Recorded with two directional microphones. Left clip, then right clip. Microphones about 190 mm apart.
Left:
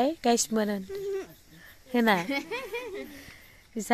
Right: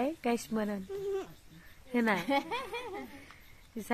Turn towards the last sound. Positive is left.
turn(degrees=-60)  # may be behind; listen again after turning